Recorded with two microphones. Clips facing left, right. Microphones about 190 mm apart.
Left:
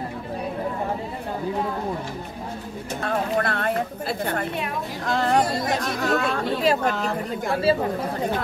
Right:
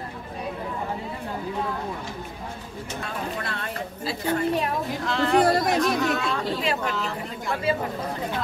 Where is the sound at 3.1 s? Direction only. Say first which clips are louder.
Left 10 dB; 55° left (ahead or behind).